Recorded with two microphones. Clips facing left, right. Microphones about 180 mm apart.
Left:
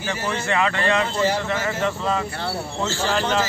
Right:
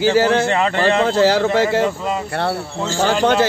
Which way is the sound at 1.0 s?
85° right.